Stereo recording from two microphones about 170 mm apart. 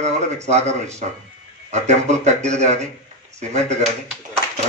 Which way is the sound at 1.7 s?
40° right (ahead or behind).